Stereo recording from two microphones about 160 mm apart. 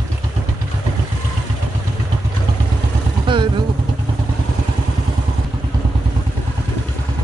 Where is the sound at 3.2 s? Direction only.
30° right (ahead or behind).